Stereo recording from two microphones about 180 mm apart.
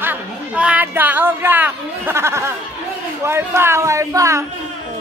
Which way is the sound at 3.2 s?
15° right (ahead or behind).